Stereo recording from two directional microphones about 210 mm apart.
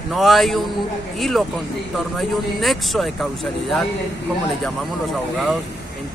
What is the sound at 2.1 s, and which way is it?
Speech, centre (ahead or behind).